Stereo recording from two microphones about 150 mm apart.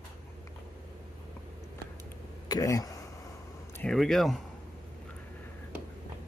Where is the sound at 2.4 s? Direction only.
25° left (ahead or behind).